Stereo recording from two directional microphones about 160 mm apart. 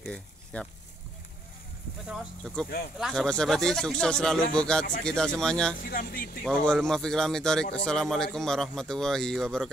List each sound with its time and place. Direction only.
0.0 s a sound: 5° left (ahead or behind)
2.0 s speech: centre (ahead or behind)
5.8 s speech: 65° left (ahead or behind)
6.4 s speech: 5° left (ahead or behind)